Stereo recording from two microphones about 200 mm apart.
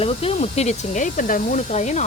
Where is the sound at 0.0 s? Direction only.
30° left (ahead or behind).